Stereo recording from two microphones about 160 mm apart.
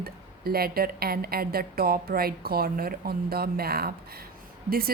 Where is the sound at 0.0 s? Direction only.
70° right (ahead or behind).